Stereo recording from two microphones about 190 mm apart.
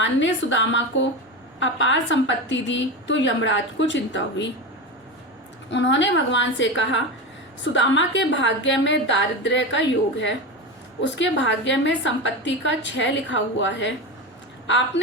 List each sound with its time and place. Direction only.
0.0 s a woman's voice: 75° left (ahead or behind)
5.7 s a woman's voice: 70° left (ahead or behind)